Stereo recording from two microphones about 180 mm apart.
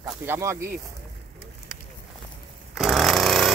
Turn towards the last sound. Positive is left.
turn(degrees=0)  # may be behind; listen again after turning